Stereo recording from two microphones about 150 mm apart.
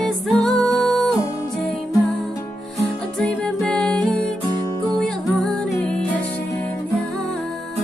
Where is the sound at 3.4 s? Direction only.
5° left (ahead or behind).